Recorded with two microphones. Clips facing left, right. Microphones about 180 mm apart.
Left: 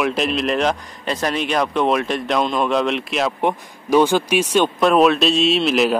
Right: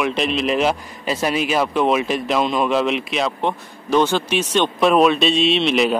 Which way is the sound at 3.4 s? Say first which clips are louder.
Left 2 dB; 10° left (ahead or behind).